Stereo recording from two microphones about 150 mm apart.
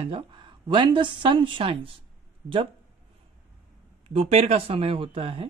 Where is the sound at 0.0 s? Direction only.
35° right (ahead or behind).